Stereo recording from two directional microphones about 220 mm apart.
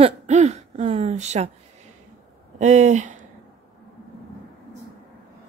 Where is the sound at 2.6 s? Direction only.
30° right (ahead or behind).